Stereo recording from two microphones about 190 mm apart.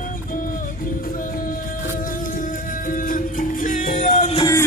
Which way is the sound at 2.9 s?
45° left (ahead or behind).